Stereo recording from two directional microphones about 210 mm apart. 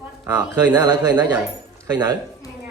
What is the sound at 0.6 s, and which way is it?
Speech, 10° right (ahead or behind).